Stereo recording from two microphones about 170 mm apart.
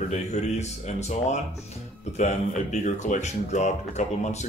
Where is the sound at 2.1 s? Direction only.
45° left (ahead or behind).